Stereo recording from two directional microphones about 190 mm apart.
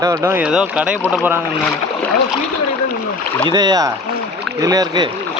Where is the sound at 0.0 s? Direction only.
15° right (ahead or behind).